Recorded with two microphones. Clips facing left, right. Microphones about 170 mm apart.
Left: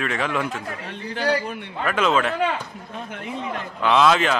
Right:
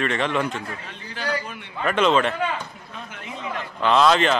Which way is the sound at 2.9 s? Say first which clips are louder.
Left 8 dB; 50° left (ahead or behind).